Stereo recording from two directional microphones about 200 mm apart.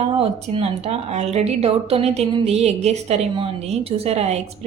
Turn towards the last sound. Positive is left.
turn(degrees=-30)  # may be behind; listen again after turning